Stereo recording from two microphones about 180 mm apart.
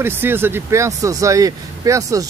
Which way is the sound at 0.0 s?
10° right (ahead or behind).